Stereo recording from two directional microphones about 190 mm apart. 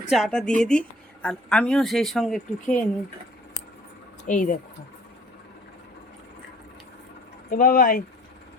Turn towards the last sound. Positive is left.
turn(degrees=45)  # may be behind; listen again after turning